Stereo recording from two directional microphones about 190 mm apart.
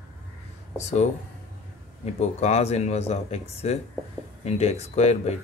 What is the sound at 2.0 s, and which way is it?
Speech, 35° left (ahead or behind).